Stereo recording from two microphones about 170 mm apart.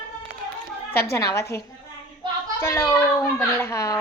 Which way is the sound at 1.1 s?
15° left (ahead or behind).